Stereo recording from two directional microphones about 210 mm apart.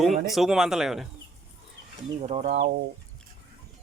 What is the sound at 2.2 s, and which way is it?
Speech, 35° right (ahead or behind).